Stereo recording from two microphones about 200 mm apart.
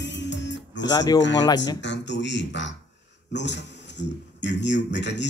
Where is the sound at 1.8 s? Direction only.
65° left (ahead or behind).